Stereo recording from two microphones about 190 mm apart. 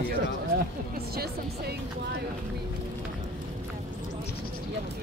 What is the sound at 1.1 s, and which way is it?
Speech, 55° right (ahead or behind).